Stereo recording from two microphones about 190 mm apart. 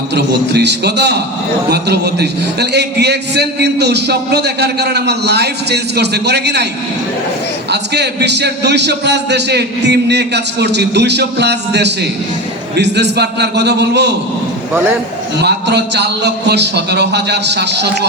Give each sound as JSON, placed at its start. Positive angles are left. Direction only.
{"t": 0.1, "sound": "a man's voice", "side_deg": -65}
{"t": 7.7, "sound": "a man's voice", "side_deg": -60}
{"t": 15.4, "sound": "a man's voice", "side_deg": -60}